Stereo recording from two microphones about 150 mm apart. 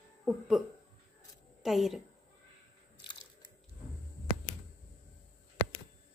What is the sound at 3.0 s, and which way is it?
Biting, 30° left (ahead or behind).